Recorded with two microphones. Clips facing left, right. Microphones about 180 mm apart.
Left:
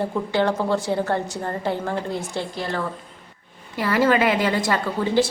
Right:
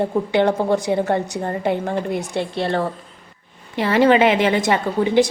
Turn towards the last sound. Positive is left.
turn(degrees=-20)  # may be behind; listen again after turning